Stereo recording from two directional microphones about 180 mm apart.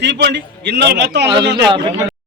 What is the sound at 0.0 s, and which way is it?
A man's voice, 70° right (ahead or behind).